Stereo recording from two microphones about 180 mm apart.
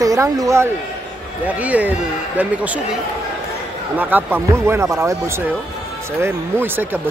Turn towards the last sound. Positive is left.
turn(degrees=-10)  # may be behind; listen again after turning